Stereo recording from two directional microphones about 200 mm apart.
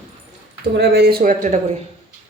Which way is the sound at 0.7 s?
55° right (ahead or behind).